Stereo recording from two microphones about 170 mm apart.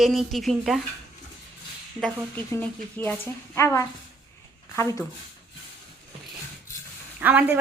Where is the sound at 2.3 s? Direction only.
10° left (ahead or behind).